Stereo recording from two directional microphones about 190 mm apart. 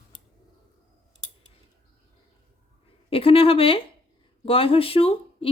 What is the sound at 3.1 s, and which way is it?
Speech, 30° left (ahead or behind).